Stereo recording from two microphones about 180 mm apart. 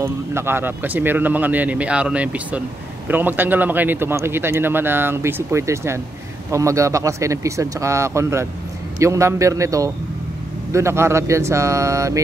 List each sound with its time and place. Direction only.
0.0 s speech: 15° right (ahead or behind)